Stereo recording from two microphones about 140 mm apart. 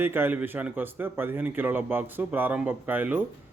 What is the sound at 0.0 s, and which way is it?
A man's voice, 15° right (ahead or behind).